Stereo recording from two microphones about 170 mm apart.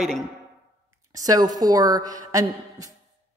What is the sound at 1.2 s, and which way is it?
A woman's voice, 20° right (ahead or behind).